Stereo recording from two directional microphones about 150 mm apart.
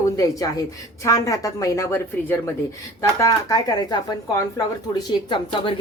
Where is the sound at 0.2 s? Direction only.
25° left (ahead or behind).